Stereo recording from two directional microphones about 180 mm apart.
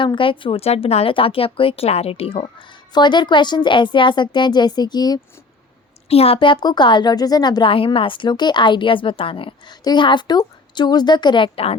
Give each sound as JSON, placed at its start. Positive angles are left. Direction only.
{"t": 0.0, "sound": "a woman's voice", "side_deg": 30}
{"t": 6.1, "sound": "a woman's voice", "side_deg": 35}